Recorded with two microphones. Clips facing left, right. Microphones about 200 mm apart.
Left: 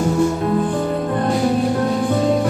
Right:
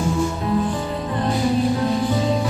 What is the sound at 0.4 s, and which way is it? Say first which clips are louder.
Music: left 3 dB; 50° left (ahead or behind).